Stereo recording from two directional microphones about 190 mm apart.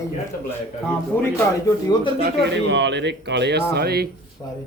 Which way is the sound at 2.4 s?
65° right (ahead or behind).